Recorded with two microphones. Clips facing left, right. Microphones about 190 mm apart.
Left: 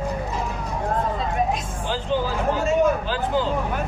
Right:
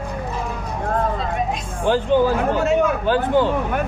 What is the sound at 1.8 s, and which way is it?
Speech, 55° right (ahead or behind).